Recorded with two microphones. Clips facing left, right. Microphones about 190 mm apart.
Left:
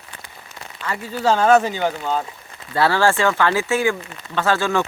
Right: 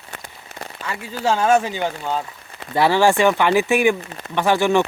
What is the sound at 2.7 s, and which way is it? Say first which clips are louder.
Speech: right 2 dB; 15° right (ahead or behind).